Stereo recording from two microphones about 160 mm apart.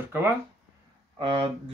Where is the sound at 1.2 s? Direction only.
35° right (ahead or behind).